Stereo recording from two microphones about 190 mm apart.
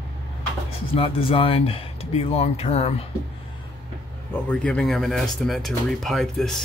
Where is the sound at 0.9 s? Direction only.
30° left (ahead or behind).